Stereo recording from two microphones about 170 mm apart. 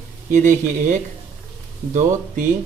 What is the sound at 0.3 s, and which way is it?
Speech, 45° right (ahead or behind).